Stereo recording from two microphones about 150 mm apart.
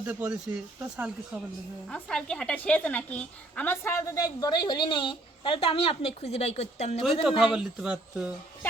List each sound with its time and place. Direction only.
0.0 s speech: 10° right (ahead or behind)
1.9 s a woman's voice: 5° left (ahead or behind); by 7.0 s 45° left (ahead or behind)
7.0 s speech: centre (ahead or behind)